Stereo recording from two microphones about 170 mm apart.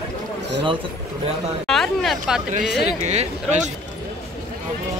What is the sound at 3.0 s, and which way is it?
Speech, 40° right (ahead or behind).